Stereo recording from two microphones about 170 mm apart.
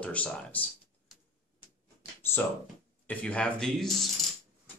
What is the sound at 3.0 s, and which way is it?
Speech, 5° left (ahead or behind).